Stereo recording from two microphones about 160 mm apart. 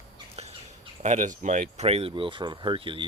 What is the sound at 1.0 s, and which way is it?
Speech, 50° right (ahead or behind).